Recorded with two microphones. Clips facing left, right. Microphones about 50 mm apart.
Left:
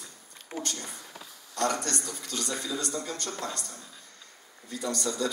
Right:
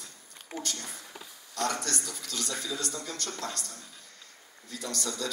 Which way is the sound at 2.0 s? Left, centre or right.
Centre.